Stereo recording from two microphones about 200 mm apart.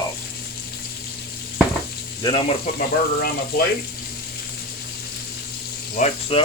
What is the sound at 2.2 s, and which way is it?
Speech, 25° left (ahead or behind).